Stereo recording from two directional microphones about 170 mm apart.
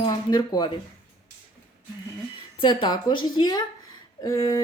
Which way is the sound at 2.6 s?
25° left (ahead or behind).